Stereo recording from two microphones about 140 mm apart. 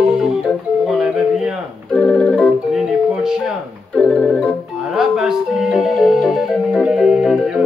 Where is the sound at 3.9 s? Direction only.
5° left (ahead or behind).